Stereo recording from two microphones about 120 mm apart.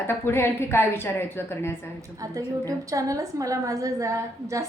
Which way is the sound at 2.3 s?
25° right (ahead or behind).